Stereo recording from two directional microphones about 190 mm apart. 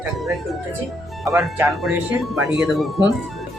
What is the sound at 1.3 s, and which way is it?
Speech, 15° right (ahead or behind).